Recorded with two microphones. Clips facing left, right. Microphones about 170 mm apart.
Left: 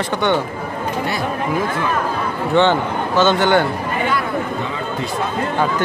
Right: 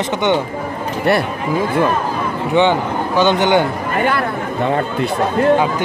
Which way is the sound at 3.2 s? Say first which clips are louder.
Right 1 dB; 15° right (ahead or behind).